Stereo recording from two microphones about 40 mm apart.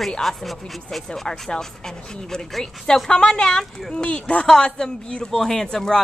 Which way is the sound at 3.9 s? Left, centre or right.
Left.